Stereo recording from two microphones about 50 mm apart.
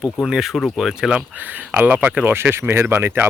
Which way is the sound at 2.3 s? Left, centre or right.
Right.